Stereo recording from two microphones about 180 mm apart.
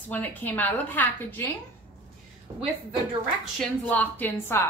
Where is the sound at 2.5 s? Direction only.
25° right (ahead or behind).